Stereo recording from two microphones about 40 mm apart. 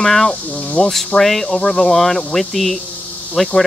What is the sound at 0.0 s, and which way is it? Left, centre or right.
Speech, centre.